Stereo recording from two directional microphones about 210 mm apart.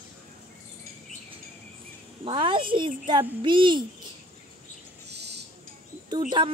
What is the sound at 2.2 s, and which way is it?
A child's voice, 25° right (ahead or behind).